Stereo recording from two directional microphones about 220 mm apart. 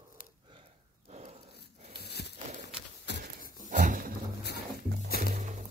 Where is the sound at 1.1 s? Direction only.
30° right (ahead or behind).